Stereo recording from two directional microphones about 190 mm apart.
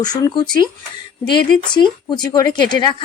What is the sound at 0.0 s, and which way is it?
Speech, 20° left (ahead or behind).